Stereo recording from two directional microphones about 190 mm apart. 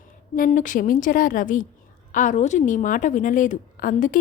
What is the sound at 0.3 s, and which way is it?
A woman's voice, 45° left (ahead or behind).